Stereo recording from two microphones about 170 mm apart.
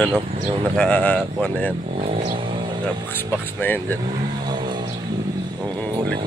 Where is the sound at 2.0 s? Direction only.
35° right (ahead or behind).